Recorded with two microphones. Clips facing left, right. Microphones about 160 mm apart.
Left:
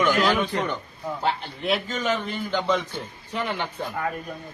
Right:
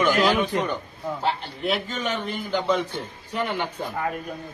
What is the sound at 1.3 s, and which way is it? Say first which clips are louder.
A man's voice: left 1 dB; centre (ahead or behind).